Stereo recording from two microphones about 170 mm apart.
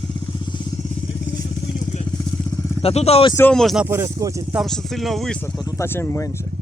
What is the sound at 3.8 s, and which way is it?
Speech, 15° right (ahead or behind).